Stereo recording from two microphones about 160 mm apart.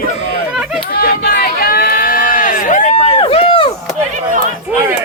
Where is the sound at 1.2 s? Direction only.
70° left (ahead or behind); by 3.2 s 50° left (ahead or behind).